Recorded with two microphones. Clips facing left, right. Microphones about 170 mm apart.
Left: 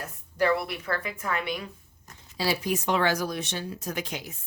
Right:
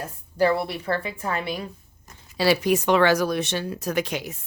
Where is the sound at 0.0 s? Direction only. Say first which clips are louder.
Right 4 dB; 30° right (ahead or behind).